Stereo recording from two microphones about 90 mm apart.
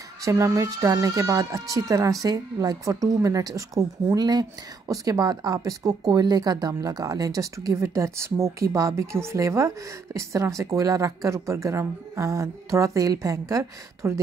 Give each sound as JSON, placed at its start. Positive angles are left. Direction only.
{"t": 0.2, "sound": "speech", "side_deg": -35}